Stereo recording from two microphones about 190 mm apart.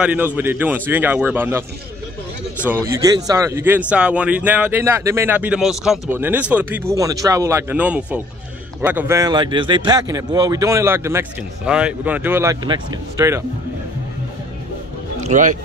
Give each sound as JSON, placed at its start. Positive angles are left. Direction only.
{"t": 0.0, "sound": "a man's voice", "side_deg": -10}
{"t": 2.7, "sound": "a man's voice", "side_deg": -15}
{"t": 12.6, "sound": "speech", "side_deg": -25}
{"t": 15.1, "sound": "music", "side_deg": -40}